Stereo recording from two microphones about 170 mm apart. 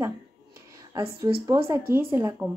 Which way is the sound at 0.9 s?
20° right (ahead or behind).